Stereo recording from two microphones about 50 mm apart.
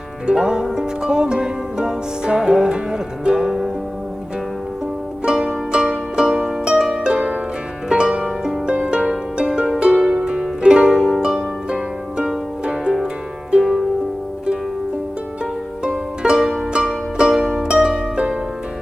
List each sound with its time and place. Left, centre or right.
0.3 s music: centre
5.2 s music: centre
7.9 s harp: centre
10.0 s music: centre
10.6 s harp: centre
13.6 s music: centre
15.8 s music: centre
16.4 s music: centre
16.7 s music: centre